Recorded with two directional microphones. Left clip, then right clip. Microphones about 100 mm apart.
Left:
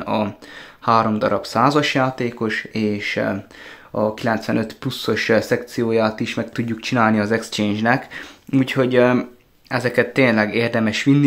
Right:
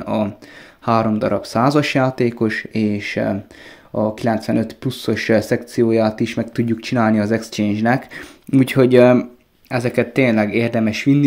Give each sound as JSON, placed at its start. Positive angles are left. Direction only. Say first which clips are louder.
{"t": 0.1, "sound": "speech", "louder": "right 3 dB", "side_deg": -30}
{"t": 8.5, "sound": "speech", "louder": "right 4 dB", "side_deg": -50}
{"t": 9.7, "sound": "speech", "louder": "even", "side_deg": -30}